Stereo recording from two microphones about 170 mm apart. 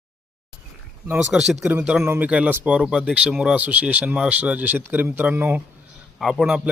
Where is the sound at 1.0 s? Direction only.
5° right (ahead or behind).